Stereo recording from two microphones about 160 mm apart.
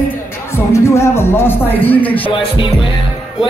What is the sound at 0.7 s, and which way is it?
Speech, 15° left (ahead or behind).